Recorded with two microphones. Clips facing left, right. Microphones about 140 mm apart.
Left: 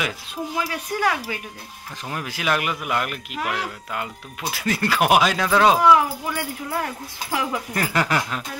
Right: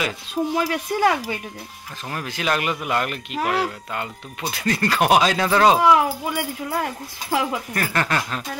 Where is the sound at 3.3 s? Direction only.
35° right (ahead or behind).